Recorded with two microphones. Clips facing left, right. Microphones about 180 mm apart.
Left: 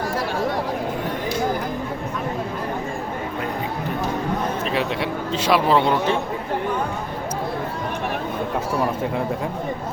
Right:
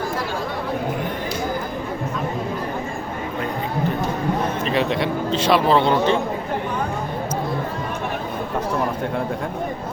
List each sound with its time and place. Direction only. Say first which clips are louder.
4.6 s speech: right 3 dB; 5° left (ahead or behind)